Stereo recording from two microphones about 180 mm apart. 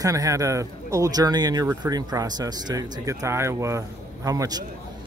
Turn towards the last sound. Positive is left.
turn(degrees=-20)  # may be behind; listen again after turning